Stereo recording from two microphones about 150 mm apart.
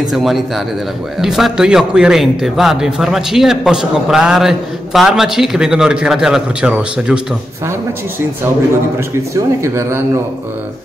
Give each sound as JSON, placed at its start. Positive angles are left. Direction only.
{"t": 0.1, "sound": "a man's voice", "side_deg": 0}
{"t": 9.3, "sound": "speech", "side_deg": -20}